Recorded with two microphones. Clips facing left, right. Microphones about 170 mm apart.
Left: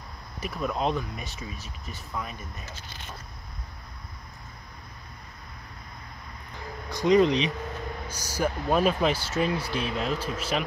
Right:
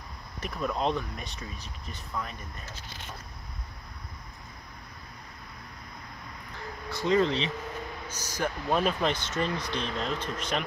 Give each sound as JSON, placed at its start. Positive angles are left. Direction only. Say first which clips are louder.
{"t": 0.4, "sound": "speech", "louder": "left 1 dB", "side_deg": 5}
{"t": 6.9, "sound": "speech", "louder": "left 5 dB", "side_deg": 15}